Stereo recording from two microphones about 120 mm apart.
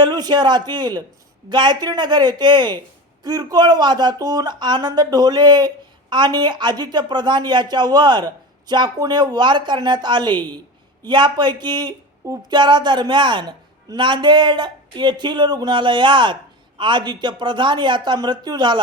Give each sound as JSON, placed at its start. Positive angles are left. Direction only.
{"t": 0.0, "sound": "speech", "side_deg": -35}